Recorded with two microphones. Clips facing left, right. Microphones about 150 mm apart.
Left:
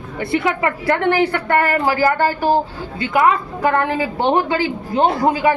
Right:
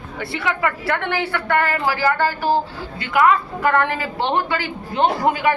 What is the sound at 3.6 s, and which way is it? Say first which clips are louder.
Speech: left 3 dB; 15° left (ahead or behind).